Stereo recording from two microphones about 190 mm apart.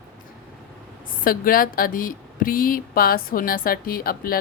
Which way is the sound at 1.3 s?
50° left (ahead or behind).